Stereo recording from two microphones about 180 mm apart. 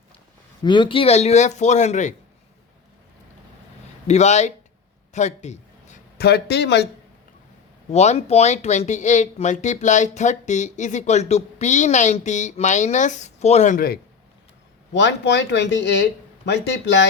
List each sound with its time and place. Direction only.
0.6 s speech: 25° left (ahead or behind); by 2.1 s 40° left (ahead or behind)
4.0 s speech: 40° left (ahead or behind)
5.1 s a sound: 40° left (ahead or behind)
6.1 s speech: 60° left (ahead or behind)
7.9 s speech: 40° left (ahead or behind); by 14.0 s 55° left (ahead or behind)
14.9 s speech: 75° left (ahead or behind)